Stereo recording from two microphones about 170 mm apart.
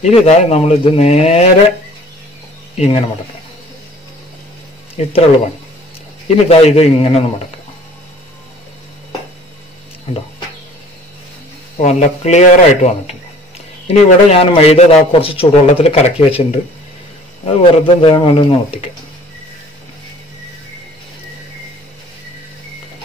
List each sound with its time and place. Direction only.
0.0 s a man's voice: 40° left (ahead or behind)
5.0 s speech: 40° left (ahead or behind)
6.2 s a man's voice: 35° left (ahead or behind)
11.8 s a man's voice: 40° left (ahead or behind)
17.5 s a man's voice: 35° left (ahead or behind)